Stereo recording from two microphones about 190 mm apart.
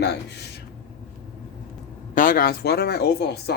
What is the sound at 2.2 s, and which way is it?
Speech, 50° left (ahead or behind).